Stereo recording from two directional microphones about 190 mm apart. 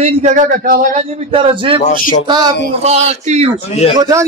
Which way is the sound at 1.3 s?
25° right (ahead or behind).